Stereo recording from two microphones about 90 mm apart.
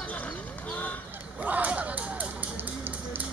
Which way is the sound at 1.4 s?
15° right (ahead or behind).